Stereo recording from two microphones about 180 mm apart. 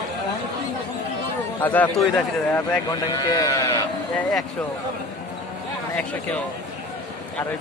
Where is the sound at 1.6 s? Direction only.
10° left (ahead or behind).